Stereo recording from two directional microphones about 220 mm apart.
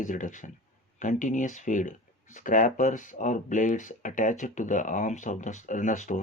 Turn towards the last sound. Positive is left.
turn(degrees=35)  # may be behind; listen again after turning